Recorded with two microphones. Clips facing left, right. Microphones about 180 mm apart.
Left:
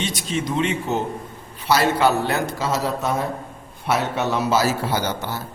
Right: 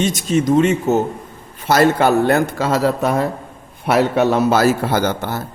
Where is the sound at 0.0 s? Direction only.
45° right (ahead or behind).